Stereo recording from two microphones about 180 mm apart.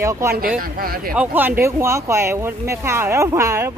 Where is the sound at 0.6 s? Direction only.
55° right (ahead or behind).